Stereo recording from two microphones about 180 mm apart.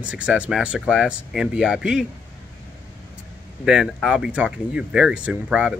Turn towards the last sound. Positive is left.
turn(degrees=-5)  # may be behind; listen again after turning